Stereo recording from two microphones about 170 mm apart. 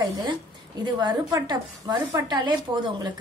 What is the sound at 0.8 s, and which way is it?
A woman's voice, 25° right (ahead or behind).